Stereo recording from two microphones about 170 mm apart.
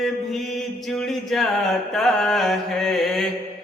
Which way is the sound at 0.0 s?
Centre (ahead or behind).